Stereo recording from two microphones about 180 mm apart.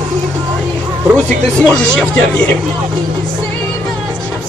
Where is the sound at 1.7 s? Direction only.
5° left (ahead or behind).